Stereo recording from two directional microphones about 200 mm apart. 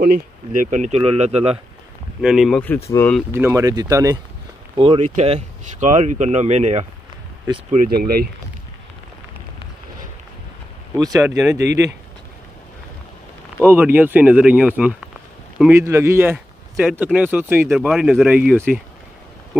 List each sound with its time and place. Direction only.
0.0 s speech: 40° right (ahead or behind)
2.2 s speech: centre (ahead or behind)
3.3 s speech: 15° right (ahead or behind)
4.7 s speech: 30° right (ahead or behind); by 8.3 s 50° right (ahead or behind)
11.2 s speech: 15° right (ahead or behind)
13.7 s speech: 10° right (ahead or behind)